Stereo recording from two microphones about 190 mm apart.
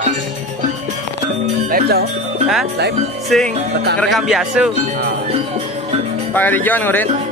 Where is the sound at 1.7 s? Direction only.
55° right (ahead or behind).